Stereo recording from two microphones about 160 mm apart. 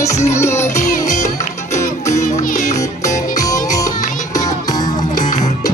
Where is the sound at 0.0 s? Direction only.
20° left (ahead or behind).